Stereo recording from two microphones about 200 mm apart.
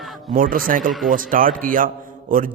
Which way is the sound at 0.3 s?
45° right (ahead or behind).